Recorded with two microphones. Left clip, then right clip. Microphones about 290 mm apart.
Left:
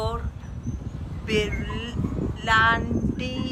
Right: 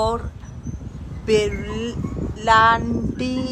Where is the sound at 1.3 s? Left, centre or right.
Centre.